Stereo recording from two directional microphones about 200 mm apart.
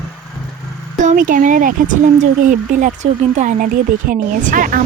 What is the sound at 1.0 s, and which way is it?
Speech, 40° right (ahead or behind).